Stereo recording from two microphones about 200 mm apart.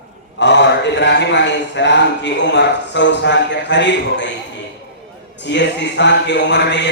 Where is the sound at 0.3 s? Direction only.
60° left (ahead or behind).